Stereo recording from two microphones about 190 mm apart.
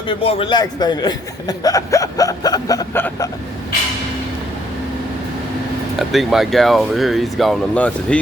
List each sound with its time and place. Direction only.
0.2 s a man's voice: 30° left (ahead or behind)
6.0 s speech: centre (ahead or behind)